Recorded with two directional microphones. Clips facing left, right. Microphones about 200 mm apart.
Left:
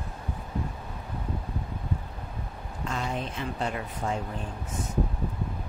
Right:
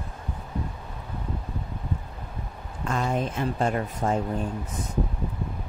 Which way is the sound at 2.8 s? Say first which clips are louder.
Right 6 dB; 50° right (ahead or behind).